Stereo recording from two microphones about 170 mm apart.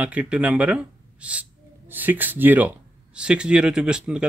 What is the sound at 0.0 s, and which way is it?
Speech, 5° right (ahead or behind).